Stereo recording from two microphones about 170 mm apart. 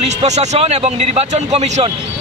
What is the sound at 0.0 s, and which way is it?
Speech, 40° right (ahead or behind).